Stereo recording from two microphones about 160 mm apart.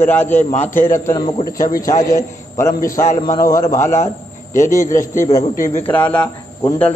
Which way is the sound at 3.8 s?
50° left (ahead or behind).